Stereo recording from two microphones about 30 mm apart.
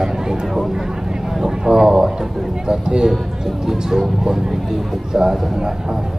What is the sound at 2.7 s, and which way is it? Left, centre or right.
A man's voice, right.